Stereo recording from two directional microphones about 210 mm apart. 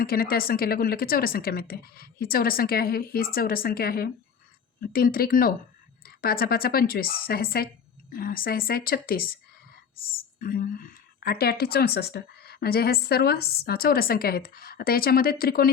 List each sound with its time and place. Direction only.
0.0 s a woman's voice: 45° left (ahead or behind)